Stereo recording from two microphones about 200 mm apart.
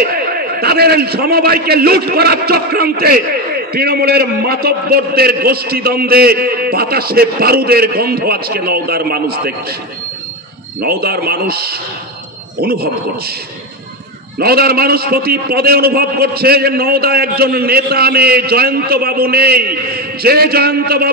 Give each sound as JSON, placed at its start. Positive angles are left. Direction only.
{"t": 0.0, "sound": "a man's voice", "side_deg": -50}
{"t": 10.8, "sound": "a man's voice", "side_deg": -50}
{"t": 14.4, "sound": "a man's voice", "side_deg": -50}